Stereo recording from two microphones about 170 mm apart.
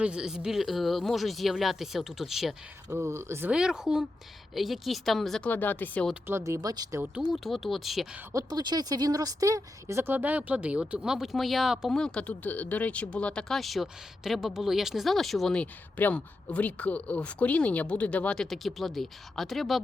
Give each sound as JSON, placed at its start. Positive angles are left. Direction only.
{"t": 0.0, "sound": "a woman's voice", "side_deg": -5}
{"t": 3.0, "sound": "a woman's voice", "side_deg": -15}
{"t": 6.2, "sound": "speech", "side_deg": -15}
{"t": 7.3, "sound": "a woman's voice", "side_deg": 0}
{"t": 8.3, "sound": "a woman's voice", "side_deg": -20}